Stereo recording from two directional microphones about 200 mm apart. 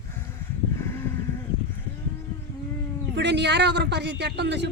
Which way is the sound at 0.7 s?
15° left (ahead or behind).